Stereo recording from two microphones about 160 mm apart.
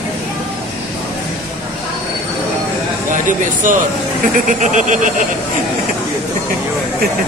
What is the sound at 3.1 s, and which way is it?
Speech, 55° right (ahead or behind).